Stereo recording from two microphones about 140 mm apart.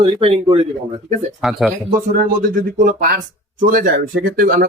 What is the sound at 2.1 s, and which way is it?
Speech, 80° right.